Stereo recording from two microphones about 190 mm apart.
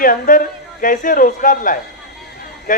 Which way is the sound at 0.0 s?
45° left (ahead or behind).